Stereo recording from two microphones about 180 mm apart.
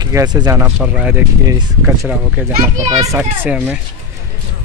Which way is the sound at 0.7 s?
5° right (ahead or behind).